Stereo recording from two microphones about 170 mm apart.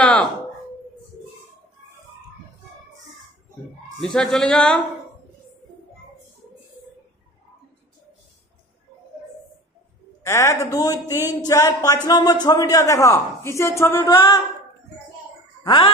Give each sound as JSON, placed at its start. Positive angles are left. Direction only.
{"t": 0.0, "sound": "a sound", "side_deg": 5}
{"t": 4.0, "sound": "speech", "side_deg": 0}
{"t": 10.2, "sound": "speech", "side_deg": 15}
{"t": 15.6, "sound": "speech", "side_deg": 30}